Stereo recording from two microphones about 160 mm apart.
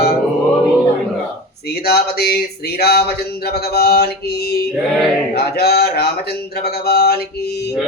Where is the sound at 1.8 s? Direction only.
80° left.